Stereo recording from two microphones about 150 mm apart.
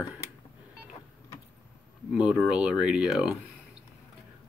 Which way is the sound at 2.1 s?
5° right (ahead or behind).